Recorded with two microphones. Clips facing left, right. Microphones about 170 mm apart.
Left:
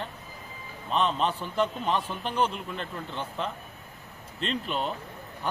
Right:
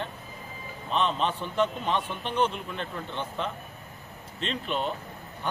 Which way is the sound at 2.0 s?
35° left (ahead or behind).